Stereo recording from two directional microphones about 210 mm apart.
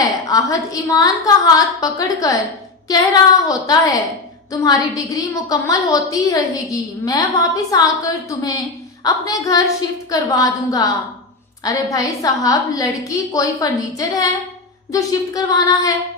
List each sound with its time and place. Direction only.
0.0 s a woman's voice: 15° left (ahead or behind)